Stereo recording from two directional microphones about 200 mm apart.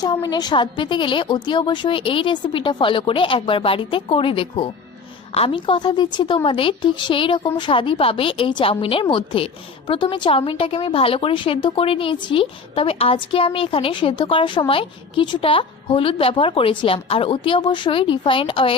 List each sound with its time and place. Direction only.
0.0 s a woman's voice: 20° left (ahead or behind)